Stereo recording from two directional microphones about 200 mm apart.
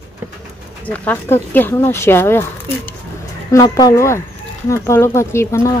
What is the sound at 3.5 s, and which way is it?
Speech, 20° left (ahead or behind).